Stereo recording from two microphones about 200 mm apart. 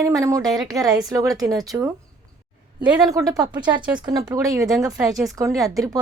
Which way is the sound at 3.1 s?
15° right (ahead or behind).